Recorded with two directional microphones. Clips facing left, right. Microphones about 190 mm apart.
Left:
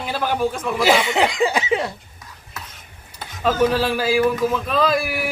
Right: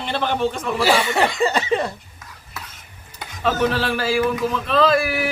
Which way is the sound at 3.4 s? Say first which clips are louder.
Left 2 dB; 10° left (ahead or behind).